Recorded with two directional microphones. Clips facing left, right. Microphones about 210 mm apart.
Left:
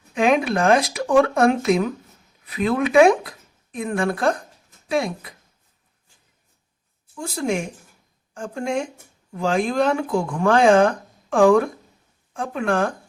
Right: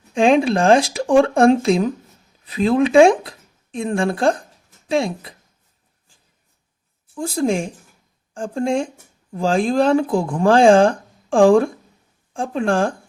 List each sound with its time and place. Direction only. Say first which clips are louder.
0.1 s speech: right 4 dB; 30° right (ahead or behind)
7.2 s speech: right 4 dB; 35° right (ahead or behind)